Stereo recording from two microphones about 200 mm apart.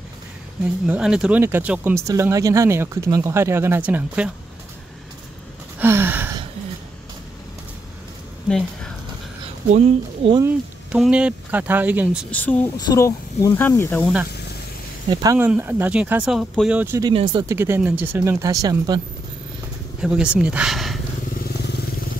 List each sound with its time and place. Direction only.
0.8 s speech: 5° right (ahead or behind)
5.8 s gasp: 10° right (ahead or behind)
8.5 s speech: 5° left (ahead or behind)
9.7 s speech: 35° right (ahead or behind)
10.4 s speech: 5° right (ahead or behind)
12.3 s speech: 5° left (ahead or behind)
12.7 s speech: 20° left (ahead or behind)
15.3 s speech: 10° right (ahead or behind)
17.1 s speech: 25° right (ahead or behind)
17.6 s speech: 10° right (ahead or behind)
20.0 s speech: 5° right (ahead or behind)